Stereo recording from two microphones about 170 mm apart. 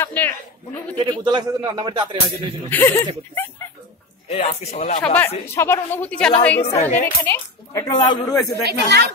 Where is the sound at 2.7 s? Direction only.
15° left (ahead or behind).